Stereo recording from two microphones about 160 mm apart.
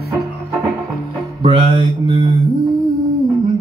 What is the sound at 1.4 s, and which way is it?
Mantra, 30° right (ahead or behind).